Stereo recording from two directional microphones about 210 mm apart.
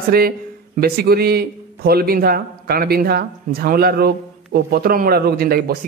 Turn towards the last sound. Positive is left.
turn(degrees=-45)  # may be behind; listen again after turning